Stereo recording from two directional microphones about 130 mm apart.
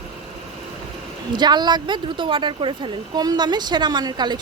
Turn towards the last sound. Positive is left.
turn(degrees=-35)  # may be behind; listen again after turning